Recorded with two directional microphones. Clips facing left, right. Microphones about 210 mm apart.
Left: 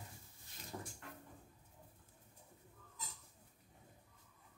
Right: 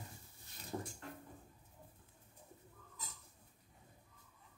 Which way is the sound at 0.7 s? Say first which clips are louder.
Right 5 dB; 25° right (ahead or behind).